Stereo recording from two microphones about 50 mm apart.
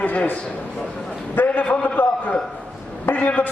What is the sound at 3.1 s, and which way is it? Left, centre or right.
Speech, left.